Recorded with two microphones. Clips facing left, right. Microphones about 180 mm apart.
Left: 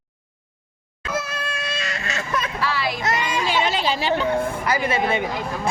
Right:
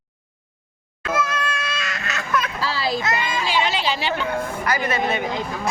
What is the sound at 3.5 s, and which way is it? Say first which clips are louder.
Chatter: even; 45° left (ahead or behind).